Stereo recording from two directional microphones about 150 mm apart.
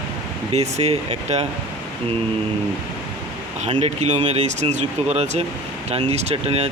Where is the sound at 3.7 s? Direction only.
40° right (ahead or behind).